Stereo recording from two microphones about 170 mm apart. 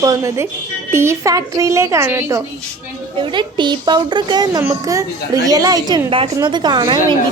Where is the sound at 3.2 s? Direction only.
30° right (ahead or behind).